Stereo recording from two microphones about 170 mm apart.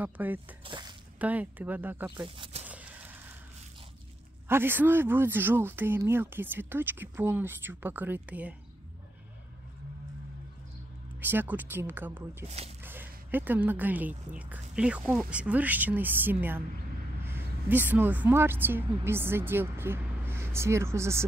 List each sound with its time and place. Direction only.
0.0 s speech: 10° right (ahead or behind)
0.7 s squish: 25° right (ahead or behind)
1.2 s speech: 10° right (ahead or behind)
2.2 s speech: 30° right (ahead or behind)
2.6 s a sound: 10° right (ahead or behind)
4.5 s speech: 10° right (ahead or behind)
11.1 s speech: 10° right (ahead or behind)
12.4 s speech: 40° right (ahead or behind)
12.8 s a woman's voice: 10° right (ahead or behind)